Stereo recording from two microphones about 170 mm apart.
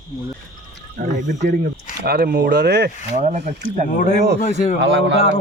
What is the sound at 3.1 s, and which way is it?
Speech, 45° right (ahead or behind).